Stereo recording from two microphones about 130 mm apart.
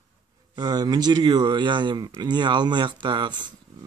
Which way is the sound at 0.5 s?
30° right (ahead or behind).